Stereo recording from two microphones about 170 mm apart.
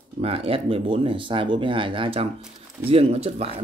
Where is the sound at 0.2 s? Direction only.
35° right (ahead or behind).